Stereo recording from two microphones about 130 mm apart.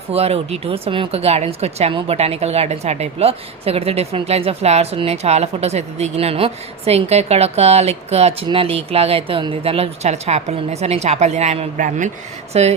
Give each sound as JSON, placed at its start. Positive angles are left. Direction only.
{"t": 0.1, "sound": "a woman's voice", "side_deg": -50}
{"t": 12.5, "sound": "a woman's voice", "side_deg": -55}